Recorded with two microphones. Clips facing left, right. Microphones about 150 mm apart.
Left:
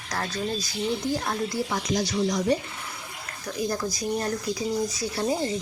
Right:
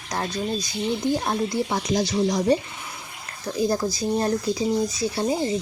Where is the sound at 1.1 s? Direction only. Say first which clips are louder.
Right 4 dB; 25° right (ahead or behind).